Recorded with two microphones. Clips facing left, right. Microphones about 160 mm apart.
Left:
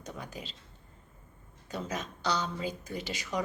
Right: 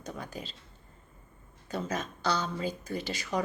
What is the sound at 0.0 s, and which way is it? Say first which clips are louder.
Speech: right 2 dB; 15° left (ahead or behind).